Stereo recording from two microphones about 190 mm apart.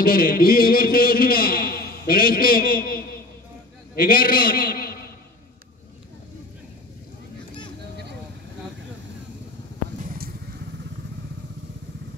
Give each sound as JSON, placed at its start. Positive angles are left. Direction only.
{"t": 0.0, "sound": "a man's voice", "side_deg": 50}
{"t": 10.0, "sound": "vehicle", "side_deg": -50}